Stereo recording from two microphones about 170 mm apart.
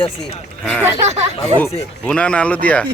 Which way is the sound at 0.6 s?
5° left (ahead or behind).